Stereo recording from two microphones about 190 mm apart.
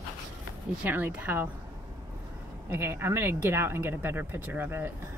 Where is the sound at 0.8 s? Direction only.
10° right (ahead or behind).